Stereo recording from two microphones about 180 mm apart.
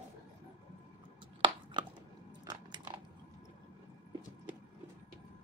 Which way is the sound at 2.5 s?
25° right (ahead or behind).